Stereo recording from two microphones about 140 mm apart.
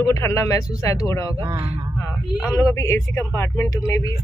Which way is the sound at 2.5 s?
25° left (ahead or behind).